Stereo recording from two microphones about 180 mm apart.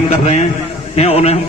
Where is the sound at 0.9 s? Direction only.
35° left (ahead or behind).